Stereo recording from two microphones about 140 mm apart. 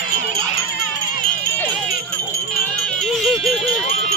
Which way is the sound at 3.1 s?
Centre (ahead or behind).